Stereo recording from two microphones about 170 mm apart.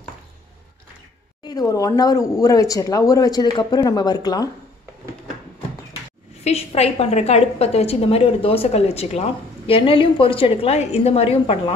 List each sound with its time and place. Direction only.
1.7 s speech: 20° left (ahead or behind)
6.4 s a woman's voice: 35° left (ahead or behind)